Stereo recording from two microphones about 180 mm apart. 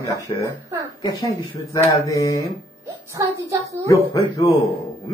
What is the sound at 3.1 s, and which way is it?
Child singing, 20° right (ahead or behind).